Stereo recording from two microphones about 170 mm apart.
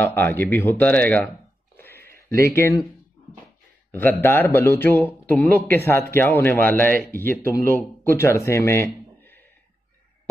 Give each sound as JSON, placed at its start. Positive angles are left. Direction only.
{"t": 0.0, "sound": "speech", "side_deg": 10}
{"t": 1.8, "sound": "a sound", "side_deg": 10}
{"t": 2.4, "sound": "speech", "side_deg": 15}
{"t": 3.9, "sound": "speech", "side_deg": 10}